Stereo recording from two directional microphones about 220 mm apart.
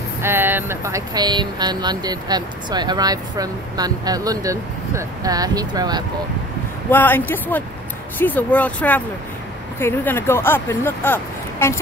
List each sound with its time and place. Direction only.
0.2 s speech: 10° right (ahead or behind)
6.9 s speech: 10° left (ahead or behind)